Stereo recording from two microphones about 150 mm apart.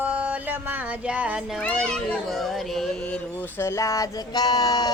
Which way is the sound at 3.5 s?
15° left (ahead or behind).